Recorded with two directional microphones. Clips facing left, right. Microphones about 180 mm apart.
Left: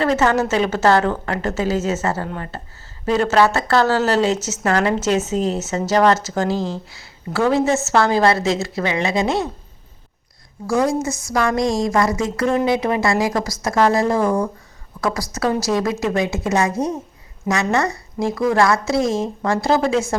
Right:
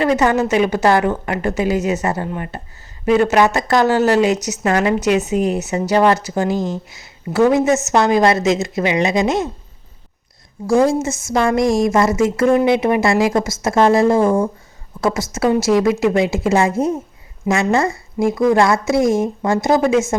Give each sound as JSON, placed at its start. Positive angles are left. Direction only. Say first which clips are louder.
{"t": 0.0, "sound": "speech", "louder": "right 2 dB", "side_deg": -15}
{"t": 10.7, "sound": "a woman's voice", "louder": "right 4 dB", "side_deg": -25}